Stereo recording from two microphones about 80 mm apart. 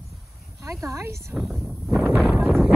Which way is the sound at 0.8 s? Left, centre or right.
Right.